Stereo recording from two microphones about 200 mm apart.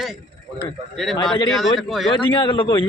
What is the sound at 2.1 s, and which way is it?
Speech, 25° left (ahead or behind).